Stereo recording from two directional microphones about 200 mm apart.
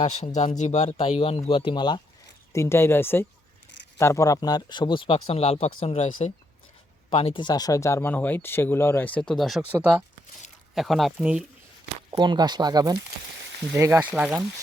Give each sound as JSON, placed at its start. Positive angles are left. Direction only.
{"t": 0.3, "sound": "speech", "side_deg": 35}
{"t": 12.1, "sound": "speech", "side_deg": -20}